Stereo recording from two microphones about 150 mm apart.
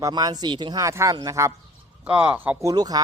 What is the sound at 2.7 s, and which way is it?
Speech, 25° right (ahead or behind).